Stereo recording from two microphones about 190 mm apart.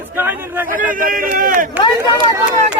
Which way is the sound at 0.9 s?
45° right (ahead or behind).